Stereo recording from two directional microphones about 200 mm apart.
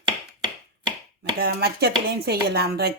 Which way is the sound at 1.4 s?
50° right (ahead or behind).